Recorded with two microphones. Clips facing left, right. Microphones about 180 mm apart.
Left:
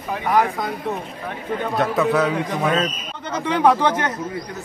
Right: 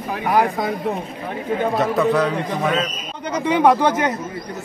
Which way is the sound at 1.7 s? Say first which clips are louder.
Even; centre (ahead or behind).